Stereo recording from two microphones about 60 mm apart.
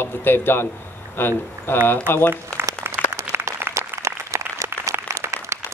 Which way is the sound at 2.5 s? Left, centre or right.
Centre.